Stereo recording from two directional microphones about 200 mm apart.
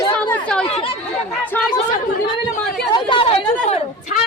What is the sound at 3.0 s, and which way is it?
Chatter, 25° left (ahead or behind).